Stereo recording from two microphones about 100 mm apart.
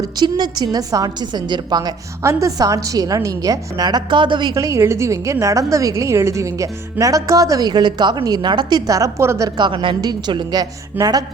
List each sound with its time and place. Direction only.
0.0 s a woman's voice: 45° right (ahead or behind)
2.2 s speech: 35° right (ahead or behind); by 4.5 s 50° right (ahead or behind)
4.5 s speech: 30° right (ahead or behind); by 8.8 s 50° right (ahead or behind)
8.9 s speech: 35° right (ahead or behind)
9.6 s a woman's voice: 50° right (ahead or behind)
11.0 s speech: 20° right (ahead or behind)